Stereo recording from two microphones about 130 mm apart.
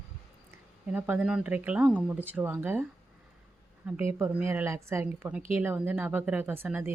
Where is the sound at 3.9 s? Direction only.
15° right (ahead or behind).